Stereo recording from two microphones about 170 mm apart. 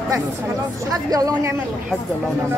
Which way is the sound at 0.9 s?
20° right (ahead or behind).